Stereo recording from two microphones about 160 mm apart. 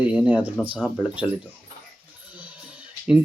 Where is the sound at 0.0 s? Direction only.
10° right (ahead or behind).